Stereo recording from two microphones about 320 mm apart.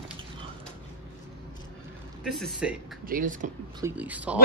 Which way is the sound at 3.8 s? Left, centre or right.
Centre.